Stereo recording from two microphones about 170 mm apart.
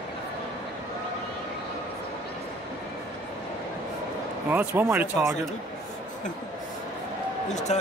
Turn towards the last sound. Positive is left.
turn(degrees=45)  # may be behind; listen again after turning